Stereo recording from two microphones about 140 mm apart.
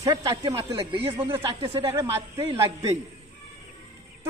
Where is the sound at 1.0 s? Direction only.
40° right (ahead or behind).